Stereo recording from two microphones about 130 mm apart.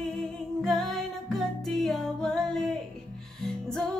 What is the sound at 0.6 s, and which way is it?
Music, centre (ahead or behind).